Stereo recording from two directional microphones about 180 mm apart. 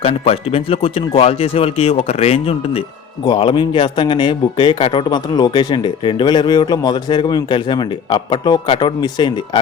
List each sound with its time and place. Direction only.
0.0 s a man's voice: 35° left (ahead or behind)